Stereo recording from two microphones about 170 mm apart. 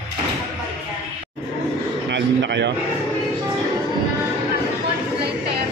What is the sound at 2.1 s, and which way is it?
Speech, 90° right.